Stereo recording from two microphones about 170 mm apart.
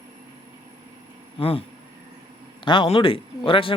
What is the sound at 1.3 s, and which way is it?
Speech, 35° left (ahead or behind).